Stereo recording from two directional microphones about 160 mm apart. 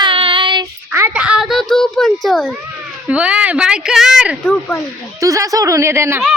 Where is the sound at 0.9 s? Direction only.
10° right (ahead or behind).